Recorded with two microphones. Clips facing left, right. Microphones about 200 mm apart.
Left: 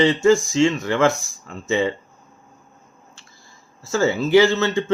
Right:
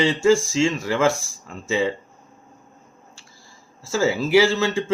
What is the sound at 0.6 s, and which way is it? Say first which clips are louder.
Speech: left 1 dB; 10° right (ahead or behind).